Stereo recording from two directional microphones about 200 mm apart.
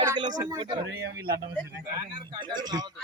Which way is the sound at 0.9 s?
60° right (ahead or behind).